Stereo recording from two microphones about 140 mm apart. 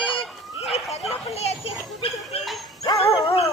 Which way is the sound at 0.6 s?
Centre (ahead or behind).